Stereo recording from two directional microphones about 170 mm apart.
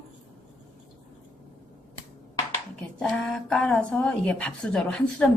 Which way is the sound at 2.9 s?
5° left (ahead or behind).